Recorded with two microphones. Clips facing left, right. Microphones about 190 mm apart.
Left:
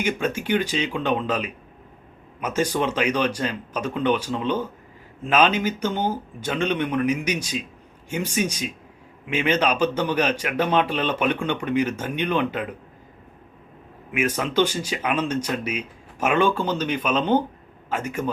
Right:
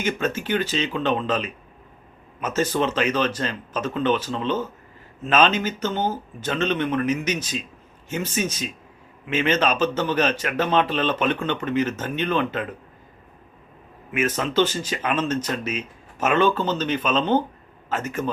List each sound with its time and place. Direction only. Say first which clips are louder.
0.0 s a man's voice: even; 10° left (ahead or behind)
14.1 s a man's voice: even; 10° left (ahead or behind)